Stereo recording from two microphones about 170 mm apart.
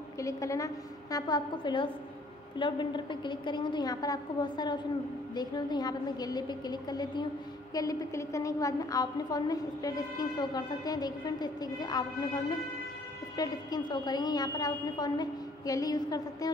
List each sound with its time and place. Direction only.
0.2 s a woman's voice: 20° left (ahead or behind)